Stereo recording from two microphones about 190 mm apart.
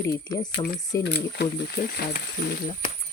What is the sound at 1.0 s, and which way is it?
Speech, 60° left (ahead or behind).